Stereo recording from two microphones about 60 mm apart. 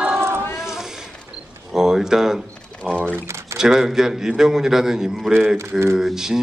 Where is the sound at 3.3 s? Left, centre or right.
Right.